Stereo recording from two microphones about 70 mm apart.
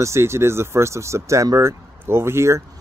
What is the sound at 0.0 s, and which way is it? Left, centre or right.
Speech, right.